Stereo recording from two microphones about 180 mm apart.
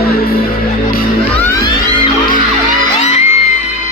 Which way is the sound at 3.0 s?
40° left (ahead or behind).